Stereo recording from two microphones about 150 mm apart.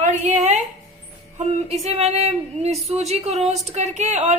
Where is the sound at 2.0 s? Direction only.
45° right (ahead or behind).